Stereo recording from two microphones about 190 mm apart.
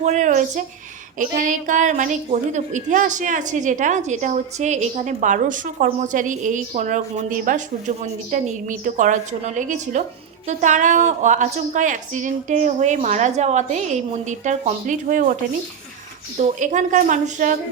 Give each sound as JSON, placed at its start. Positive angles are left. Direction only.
{"t": 0.0, "sound": "a woman's voice", "side_deg": -40}
{"t": 16.4, "sound": "a woman's voice", "side_deg": -40}